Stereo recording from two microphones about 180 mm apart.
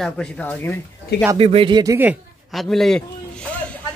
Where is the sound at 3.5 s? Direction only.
5° left (ahead or behind).